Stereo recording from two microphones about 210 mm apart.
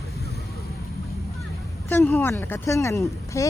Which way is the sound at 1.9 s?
10° left (ahead or behind).